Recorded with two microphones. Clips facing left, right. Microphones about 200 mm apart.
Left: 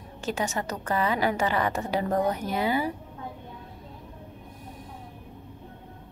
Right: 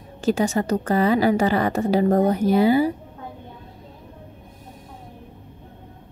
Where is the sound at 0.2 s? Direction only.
35° right (ahead or behind).